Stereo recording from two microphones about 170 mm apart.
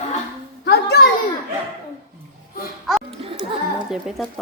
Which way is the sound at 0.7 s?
70° left (ahead or behind).